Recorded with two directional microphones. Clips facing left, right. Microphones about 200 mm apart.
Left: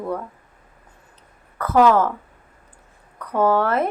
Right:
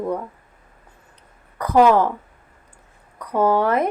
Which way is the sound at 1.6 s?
15° right (ahead or behind).